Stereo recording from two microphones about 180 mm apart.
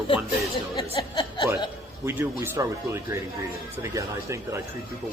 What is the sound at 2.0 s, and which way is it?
Speech, 15° right (ahead or behind).